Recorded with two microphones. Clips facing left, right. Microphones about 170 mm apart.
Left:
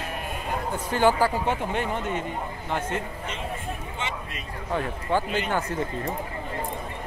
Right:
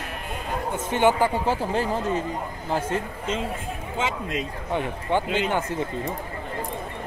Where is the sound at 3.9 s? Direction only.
90° right.